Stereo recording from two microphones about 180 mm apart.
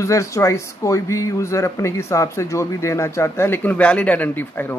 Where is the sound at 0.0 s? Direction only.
15° left (ahead or behind).